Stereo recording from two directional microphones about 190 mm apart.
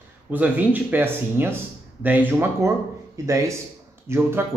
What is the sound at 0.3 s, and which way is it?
Speech, 10° right (ahead or behind).